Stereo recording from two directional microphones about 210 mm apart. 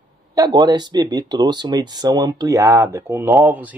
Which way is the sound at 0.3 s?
20° right (ahead or behind).